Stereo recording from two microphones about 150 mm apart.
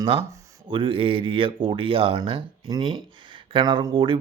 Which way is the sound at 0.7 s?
35° right (ahead or behind).